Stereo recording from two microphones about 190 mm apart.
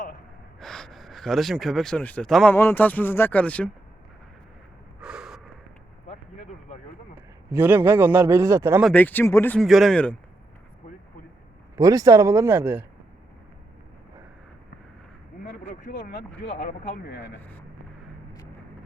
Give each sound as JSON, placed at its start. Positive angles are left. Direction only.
{"t": 0.6, "sound": "speech", "side_deg": 5}
{"t": 4.9, "sound": "snort", "side_deg": -5}
{"t": 6.1, "sound": "a sound", "side_deg": 40}
{"t": 7.2, "sound": "a man's voice", "side_deg": -10}
{"t": 8.8, "sound": "speech", "side_deg": 10}
{"t": 11.8, "sound": "speech", "side_deg": -20}
{"t": 15.7, "sound": "speech", "side_deg": 50}